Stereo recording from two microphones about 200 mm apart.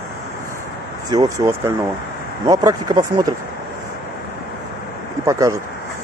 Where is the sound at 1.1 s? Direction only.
15° right (ahead or behind).